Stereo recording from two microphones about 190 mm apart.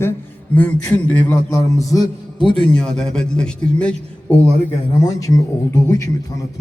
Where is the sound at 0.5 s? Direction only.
10° left (ahead or behind).